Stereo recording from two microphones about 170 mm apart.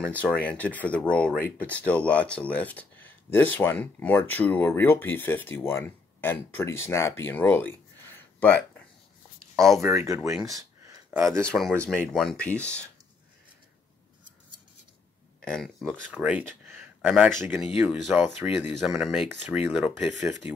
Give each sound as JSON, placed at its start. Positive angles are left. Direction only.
{"t": 0.0, "sound": "speech", "side_deg": 5}
{"t": 9.8, "sound": "speech", "side_deg": -15}
{"t": 11.3, "sound": "speech", "side_deg": 0}
{"t": 15.4, "sound": "speech", "side_deg": 0}